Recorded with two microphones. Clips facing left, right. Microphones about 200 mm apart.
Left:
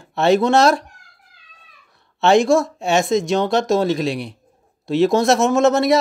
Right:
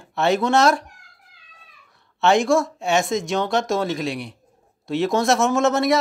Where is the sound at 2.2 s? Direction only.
25° left (ahead or behind).